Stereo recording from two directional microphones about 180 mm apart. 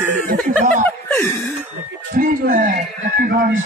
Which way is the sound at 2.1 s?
50° right (ahead or behind).